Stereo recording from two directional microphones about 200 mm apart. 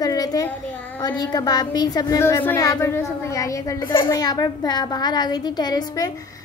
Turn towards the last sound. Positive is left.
turn(degrees=20)  # may be behind; listen again after turning